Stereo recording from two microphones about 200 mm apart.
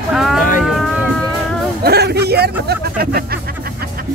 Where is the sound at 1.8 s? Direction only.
55° right (ahead or behind).